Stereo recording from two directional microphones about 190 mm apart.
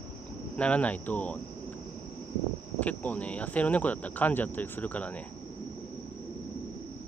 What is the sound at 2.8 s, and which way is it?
Speech, 10° left (ahead or behind).